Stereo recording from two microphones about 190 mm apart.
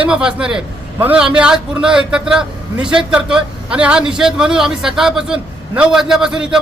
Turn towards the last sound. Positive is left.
turn(degrees=-5)  # may be behind; listen again after turning